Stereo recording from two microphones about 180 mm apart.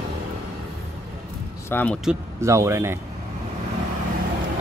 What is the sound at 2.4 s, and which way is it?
Speech, 15° right (ahead or behind).